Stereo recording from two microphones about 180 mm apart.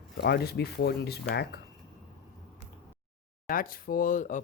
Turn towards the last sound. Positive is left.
turn(degrees=45)  # may be behind; listen again after turning